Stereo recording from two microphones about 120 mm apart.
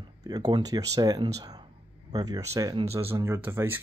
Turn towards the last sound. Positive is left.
turn(degrees=-20)  # may be behind; listen again after turning